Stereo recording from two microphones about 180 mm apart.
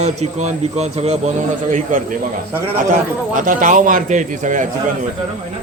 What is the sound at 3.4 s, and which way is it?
A man's voice, 45° right (ahead or behind).